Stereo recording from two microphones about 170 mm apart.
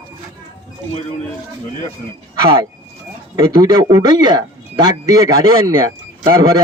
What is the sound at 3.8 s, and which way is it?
A man's voice, 25° right (ahead or behind).